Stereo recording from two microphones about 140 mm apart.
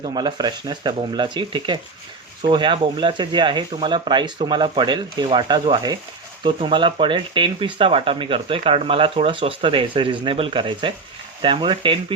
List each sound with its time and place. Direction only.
0.0 s speech: 30° right (ahead or behind)